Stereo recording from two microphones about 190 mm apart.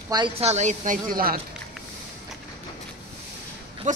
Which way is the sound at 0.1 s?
30° right (ahead or behind).